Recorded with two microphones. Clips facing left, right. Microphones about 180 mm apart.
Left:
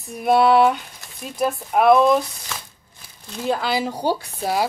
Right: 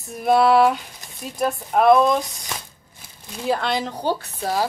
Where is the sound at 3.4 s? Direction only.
5° left (ahead or behind).